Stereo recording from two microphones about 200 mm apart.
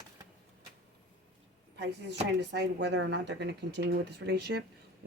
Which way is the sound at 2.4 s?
60° right (ahead or behind).